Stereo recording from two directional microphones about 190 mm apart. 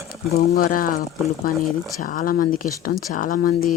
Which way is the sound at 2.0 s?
45° left (ahead or behind).